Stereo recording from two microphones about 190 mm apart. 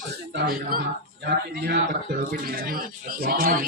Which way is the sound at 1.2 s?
65° right (ahead or behind).